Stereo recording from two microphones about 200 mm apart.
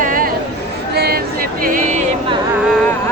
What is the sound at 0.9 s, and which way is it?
Music, 50° right (ahead or behind).